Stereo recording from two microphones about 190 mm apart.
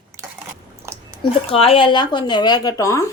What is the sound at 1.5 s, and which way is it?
Speech, 30° left (ahead or behind).